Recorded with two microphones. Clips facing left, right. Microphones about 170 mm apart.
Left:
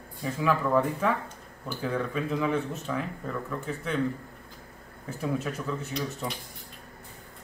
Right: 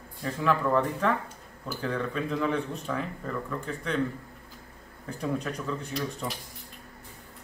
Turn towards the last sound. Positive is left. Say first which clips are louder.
# even
turn(degrees=0)  # may be behind; listen again after turning